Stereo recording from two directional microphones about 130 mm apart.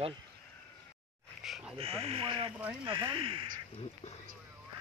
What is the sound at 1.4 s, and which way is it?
Speech, 5° right (ahead or behind).